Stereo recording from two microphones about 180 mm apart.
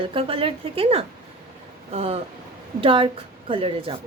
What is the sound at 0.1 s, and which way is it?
A woman's voice, 30° right (ahead or behind).